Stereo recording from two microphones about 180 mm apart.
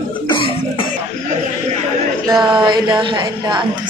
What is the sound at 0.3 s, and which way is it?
Cough, 30° left (ahead or behind).